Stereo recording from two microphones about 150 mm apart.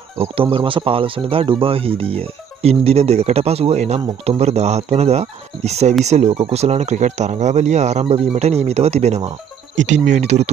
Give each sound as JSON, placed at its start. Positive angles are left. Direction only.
{"t": 0.2, "sound": "speech", "side_deg": -40}